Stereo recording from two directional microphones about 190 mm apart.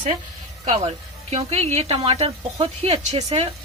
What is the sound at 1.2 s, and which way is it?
Speech, 35° right (ahead or behind).